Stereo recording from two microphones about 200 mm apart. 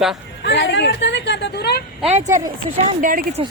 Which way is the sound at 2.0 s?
35° right (ahead or behind).